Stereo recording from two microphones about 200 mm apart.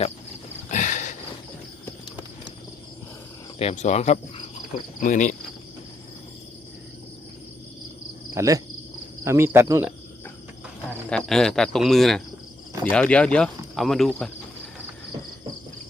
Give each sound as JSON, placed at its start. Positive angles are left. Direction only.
{"t": 0.7, "sound": "sniff", "side_deg": 40}
{"t": 3.6, "sound": "speech", "side_deg": 30}
{"t": 8.4, "sound": "speech", "side_deg": -15}
{"t": 11.1, "sound": "speech", "side_deg": 5}